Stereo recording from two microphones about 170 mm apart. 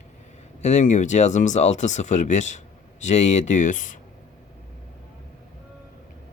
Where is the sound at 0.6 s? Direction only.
45° left (ahead or behind).